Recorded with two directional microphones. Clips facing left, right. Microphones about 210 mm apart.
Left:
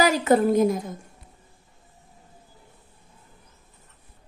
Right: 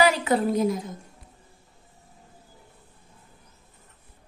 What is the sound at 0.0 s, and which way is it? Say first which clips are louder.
Speech: left 2 dB; 45° left (ahead or behind).